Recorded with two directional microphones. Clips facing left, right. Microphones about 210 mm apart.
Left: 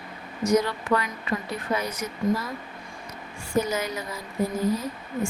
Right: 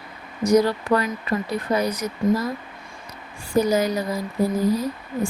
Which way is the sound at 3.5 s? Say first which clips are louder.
Right 6 dB; 35° right (ahead or behind).